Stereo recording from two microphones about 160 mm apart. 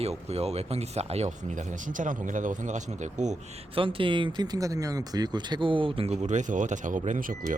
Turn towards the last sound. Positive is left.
turn(degrees=-55)  # may be behind; listen again after turning